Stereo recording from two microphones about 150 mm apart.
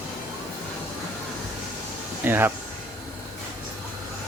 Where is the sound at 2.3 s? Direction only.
15° right (ahead or behind).